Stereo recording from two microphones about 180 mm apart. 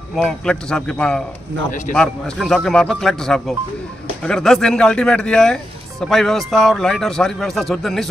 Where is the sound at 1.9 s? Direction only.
5° left (ahead or behind).